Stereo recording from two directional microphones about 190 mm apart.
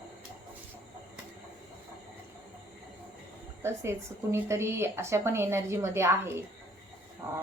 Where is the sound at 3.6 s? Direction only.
15° right (ahead or behind).